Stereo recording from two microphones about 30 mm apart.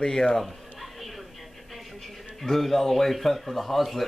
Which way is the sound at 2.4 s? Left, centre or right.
Centre.